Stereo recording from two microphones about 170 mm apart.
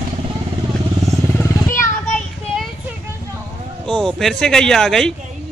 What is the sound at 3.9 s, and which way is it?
Speech, 5° left (ahead or behind).